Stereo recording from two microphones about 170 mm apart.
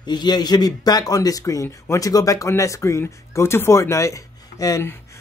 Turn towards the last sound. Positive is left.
turn(degrees=15)  # may be behind; listen again after turning